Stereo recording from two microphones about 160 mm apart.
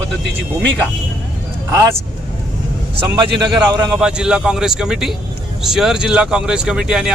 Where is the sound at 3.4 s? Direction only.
25° right (ahead or behind).